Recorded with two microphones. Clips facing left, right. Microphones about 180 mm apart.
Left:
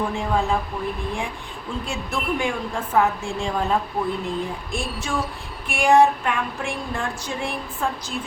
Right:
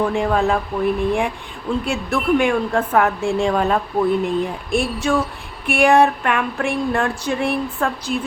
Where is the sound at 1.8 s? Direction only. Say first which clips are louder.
Right 6 dB; 65° right (ahead or behind).